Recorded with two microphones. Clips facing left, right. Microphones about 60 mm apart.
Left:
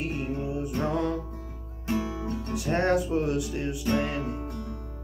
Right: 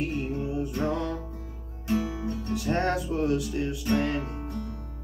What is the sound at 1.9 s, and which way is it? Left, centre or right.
Speech, left.